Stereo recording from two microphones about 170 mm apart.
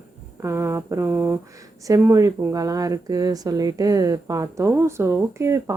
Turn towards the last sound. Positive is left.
turn(degrees=-15)  # may be behind; listen again after turning